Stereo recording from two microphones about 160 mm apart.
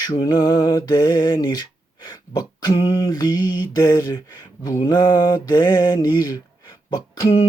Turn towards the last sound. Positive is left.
turn(degrees=35)  # may be behind; listen again after turning